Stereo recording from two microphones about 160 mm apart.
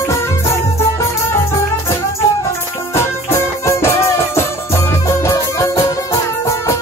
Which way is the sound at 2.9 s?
15° left (ahead or behind).